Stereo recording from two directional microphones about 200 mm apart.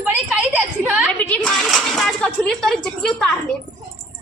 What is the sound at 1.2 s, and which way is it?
Speech, 5° left (ahead or behind).